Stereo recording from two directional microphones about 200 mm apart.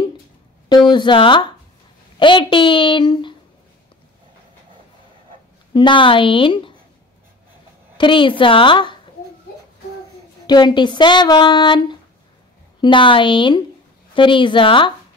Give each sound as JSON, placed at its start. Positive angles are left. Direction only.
{"t": 0.7, "sound": "speech", "side_deg": 20}
{"t": 5.7, "sound": "speech", "side_deg": 25}
{"t": 8.0, "sound": "speech", "side_deg": 25}
{"t": 10.4, "sound": "speech", "side_deg": 20}